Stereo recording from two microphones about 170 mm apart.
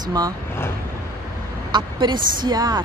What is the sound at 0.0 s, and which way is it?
Speech, 25° right (ahead or behind).